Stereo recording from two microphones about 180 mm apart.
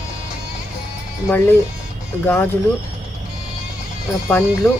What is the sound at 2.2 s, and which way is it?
Speech, 10° left (ahead or behind).